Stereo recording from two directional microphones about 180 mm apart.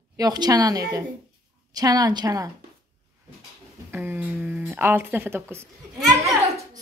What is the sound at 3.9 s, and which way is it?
Speech, 10° right (ahead or behind).